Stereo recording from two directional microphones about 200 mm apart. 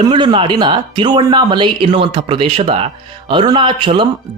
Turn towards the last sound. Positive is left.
turn(degrees=-25)  # may be behind; listen again after turning